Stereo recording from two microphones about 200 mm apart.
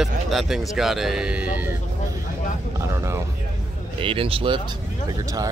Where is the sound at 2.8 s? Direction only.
15° right (ahead or behind).